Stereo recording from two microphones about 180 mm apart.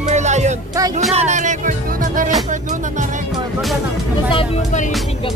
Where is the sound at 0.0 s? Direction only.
40° right (ahead or behind).